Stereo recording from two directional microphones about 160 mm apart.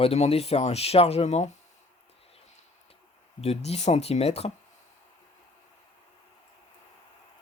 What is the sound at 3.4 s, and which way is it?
Speech, 40° left (ahead or behind).